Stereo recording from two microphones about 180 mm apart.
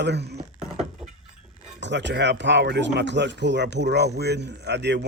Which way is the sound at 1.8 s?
75° right (ahead or behind).